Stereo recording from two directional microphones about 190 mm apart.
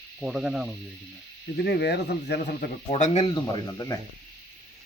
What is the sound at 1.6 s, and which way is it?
Speech, 60° left (ahead or behind).